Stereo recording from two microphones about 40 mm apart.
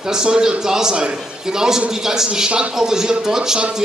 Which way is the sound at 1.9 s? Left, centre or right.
Centre.